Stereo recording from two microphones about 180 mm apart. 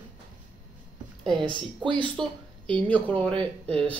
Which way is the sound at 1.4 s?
25° right (ahead or behind).